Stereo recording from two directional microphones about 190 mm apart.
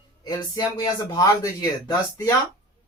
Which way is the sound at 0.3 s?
20° left (ahead or behind).